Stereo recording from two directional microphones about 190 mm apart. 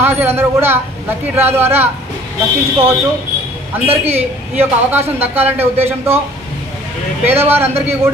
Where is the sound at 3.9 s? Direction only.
35° right (ahead or behind).